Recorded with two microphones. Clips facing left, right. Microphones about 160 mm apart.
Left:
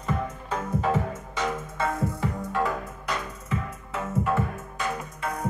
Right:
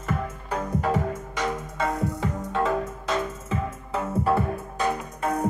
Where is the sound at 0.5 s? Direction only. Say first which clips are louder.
Right 1 dB; 10° right (ahead or behind); by 4.4 s 35° right (ahead or behind).